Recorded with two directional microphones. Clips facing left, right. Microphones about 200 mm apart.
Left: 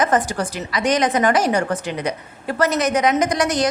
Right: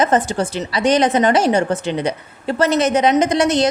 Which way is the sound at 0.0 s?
25° right (ahead or behind).